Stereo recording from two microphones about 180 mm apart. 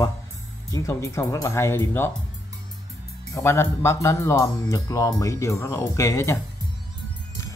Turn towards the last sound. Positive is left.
turn(degrees=15)  # may be behind; listen again after turning